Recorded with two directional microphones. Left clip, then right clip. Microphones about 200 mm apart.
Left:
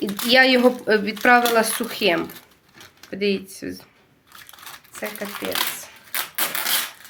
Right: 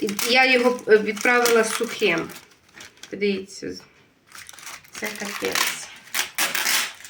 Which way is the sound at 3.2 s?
50° left (ahead or behind).